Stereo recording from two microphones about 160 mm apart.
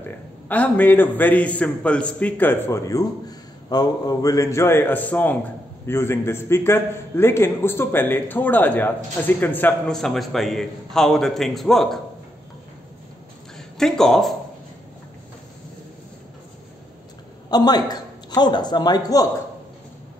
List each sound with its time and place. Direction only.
0.5 s a man's voice: 10° left (ahead or behind)
13.6 s speech: 5° left (ahead or behind)
17.5 s a man's voice: 25° left (ahead or behind)